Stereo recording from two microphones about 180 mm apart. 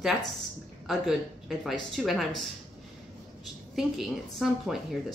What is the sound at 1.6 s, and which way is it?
Speech, centre (ahead or behind).